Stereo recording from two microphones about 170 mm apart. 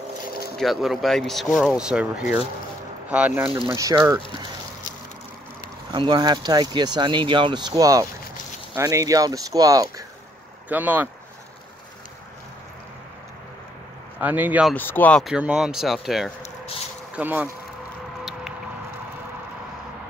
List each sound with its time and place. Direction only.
0.6 s speech: centre (ahead or behind)
3.4 s speech: 30° right (ahead or behind)
5.9 s speech: 25° right (ahead or behind)
10.7 s speech: 10° right (ahead or behind)
14.2 s speech: 10° right (ahead or behind)
14.7 s speech: 10° left (ahead or behind)
15.2 s speech: 5° right (ahead or behind)